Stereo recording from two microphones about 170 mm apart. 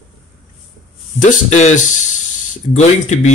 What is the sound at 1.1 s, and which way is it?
Speech, 45° left (ahead or behind).